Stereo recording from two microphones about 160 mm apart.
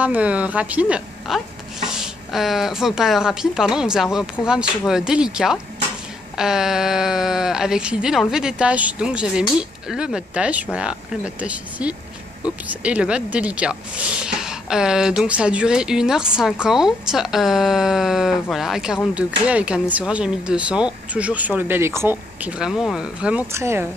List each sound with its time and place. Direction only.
0.0 s speech: 10° right (ahead or behind)
23.5 s speech: 15° right (ahead or behind)